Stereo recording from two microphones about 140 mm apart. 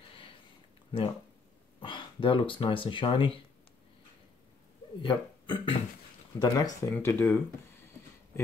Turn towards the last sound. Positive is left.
turn(degrees=20)  # may be behind; listen again after turning